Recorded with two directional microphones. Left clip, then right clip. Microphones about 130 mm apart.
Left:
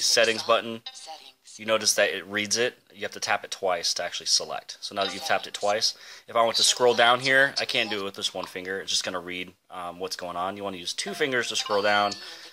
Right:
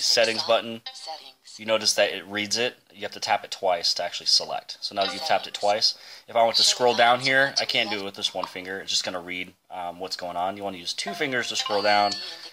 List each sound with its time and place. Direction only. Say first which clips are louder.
0.0 s speech: even; 35° left (ahead or behind)
11.5 s speech: even; centre (ahead or behind)
11.8 s speech: right 3 dB; 30° left (ahead or behind)